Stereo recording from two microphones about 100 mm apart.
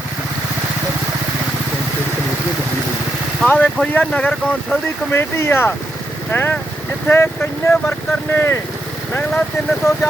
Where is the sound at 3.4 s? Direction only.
15° left (ahead or behind).